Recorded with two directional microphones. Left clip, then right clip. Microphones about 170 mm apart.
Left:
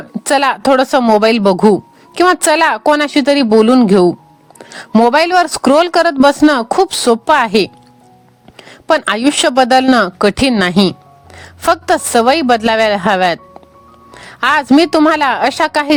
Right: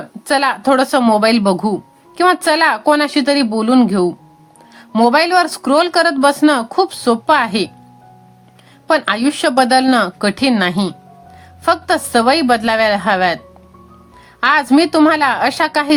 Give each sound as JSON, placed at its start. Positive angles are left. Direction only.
{"t": 0.3, "sound": "a woman's voice", "side_deg": 50}
{"t": 4.5, "sound": "music", "side_deg": 50}
{"t": 4.9, "sound": "a woman's voice", "side_deg": 40}
{"t": 8.9, "sound": "a woman's voice", "side_deg": 45}